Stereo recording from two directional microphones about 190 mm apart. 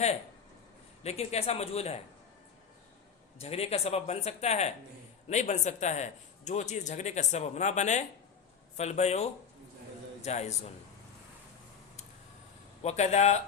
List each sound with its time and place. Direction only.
1.0 s a man's voice: 35° left (ahead or behind)
3.3 s a man's voice: 30° left (ahead or behind)
10.2 s a man's voice: 35° left (ahead or behind)
12.8 s a man's voice: 35° left (ahead or behind)